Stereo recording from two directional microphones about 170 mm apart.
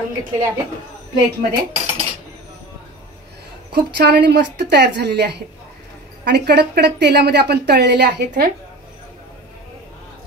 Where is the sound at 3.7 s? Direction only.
80° right.